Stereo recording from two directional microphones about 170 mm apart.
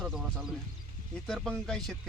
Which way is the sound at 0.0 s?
Centre (ahead or behind).